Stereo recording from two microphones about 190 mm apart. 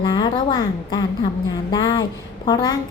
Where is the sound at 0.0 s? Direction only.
25° left (ahead or behind).